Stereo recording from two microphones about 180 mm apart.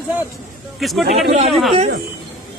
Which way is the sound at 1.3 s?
40° right (ahead or behind).